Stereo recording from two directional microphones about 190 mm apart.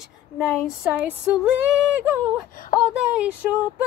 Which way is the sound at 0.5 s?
5° right (ahead or behind).